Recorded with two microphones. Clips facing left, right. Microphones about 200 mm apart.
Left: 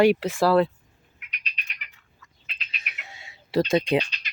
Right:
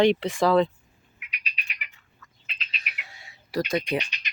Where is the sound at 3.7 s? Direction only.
25° left (ahead or behind).